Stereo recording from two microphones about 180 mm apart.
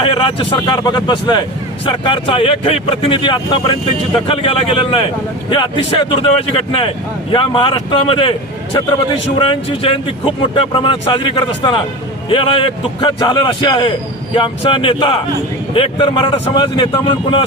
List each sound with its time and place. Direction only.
0.0 s speech: 30° left (ahead or behind)
9.4 s speech: 30° left (ahead or behind)